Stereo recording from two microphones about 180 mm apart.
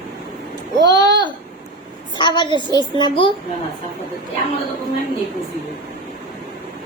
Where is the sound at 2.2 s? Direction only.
25° left (ahead or behind).